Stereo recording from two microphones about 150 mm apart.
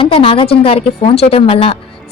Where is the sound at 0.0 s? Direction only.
40° left (ahead or behind).